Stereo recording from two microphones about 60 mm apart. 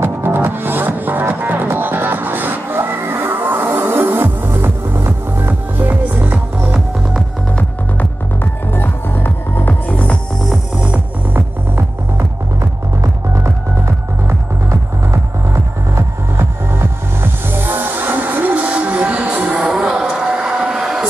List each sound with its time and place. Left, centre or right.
0.0 s music: right
5.5 s music: right
8.7 s music: left
11.3 s music: right
16.7 s music: right; by 19.6 s centre
19.6 s vehicle: centre